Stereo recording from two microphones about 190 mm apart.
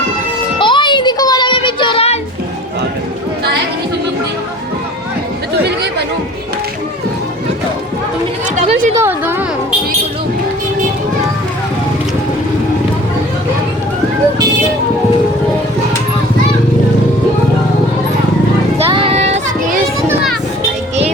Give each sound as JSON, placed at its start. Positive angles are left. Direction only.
{"t": 0.6, "sound": "music", "side_deg": 25}
{"t": 9.0, "sound": "a sound", "side_deg": -10}
{"t": 18.8, "sound": "child singing", "side_deg": -30}